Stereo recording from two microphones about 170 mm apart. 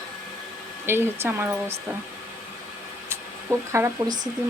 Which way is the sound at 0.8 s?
15° right (ahead or behind).